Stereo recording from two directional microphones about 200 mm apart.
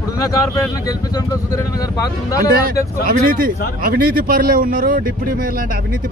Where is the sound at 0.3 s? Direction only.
15° left (ahead or behind).